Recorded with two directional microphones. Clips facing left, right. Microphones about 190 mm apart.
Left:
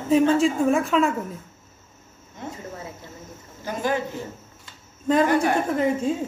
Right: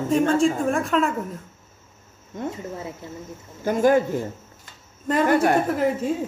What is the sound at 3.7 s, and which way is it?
Speech, 50° right (ahead or behind).